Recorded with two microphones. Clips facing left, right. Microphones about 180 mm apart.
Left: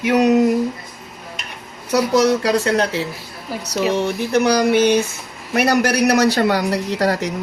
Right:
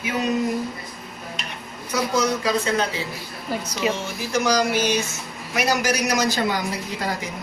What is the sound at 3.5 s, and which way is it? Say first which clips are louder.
Speech: even; 5° left (ahead or behind).